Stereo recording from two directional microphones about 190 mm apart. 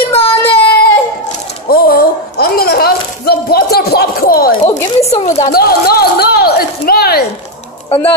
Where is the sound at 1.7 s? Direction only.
50° left (ahead or behind).